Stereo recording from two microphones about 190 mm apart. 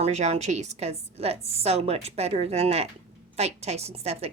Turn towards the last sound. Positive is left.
turn(degrees=-35)  # may be behind; listen again after turning